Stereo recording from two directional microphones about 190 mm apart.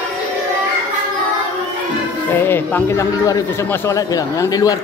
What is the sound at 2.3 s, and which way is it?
Speech, 10° left (ahead or behind).